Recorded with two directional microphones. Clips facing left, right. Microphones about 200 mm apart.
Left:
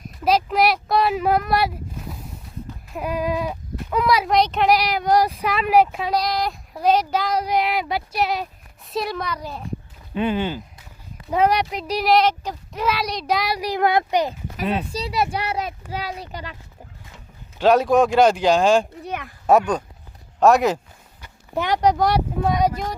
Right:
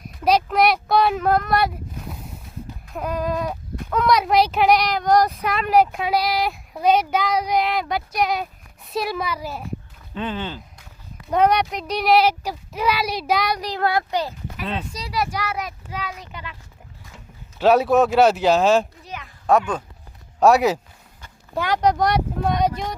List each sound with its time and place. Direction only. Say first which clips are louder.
0.3 s a sound: right 1 dB; centre (ahead or behind)
2.9 s speech: left 1 dB; 5° left (ahead or behind)
10.2 s a child's voice: left 5 dB; 10° left (ahead or behind); by 16.6 s 35° left (ahead or behind)
17.6 s speech: even; 5° right (ahead or behind)
19.0 s a sound: left 6 dB; 55° left (ahead or behind)
19.5 s speech: left 2 dB; centre (ahead or behind)
21.2 s speech: left 1 dB; 15° left (ahead or behind)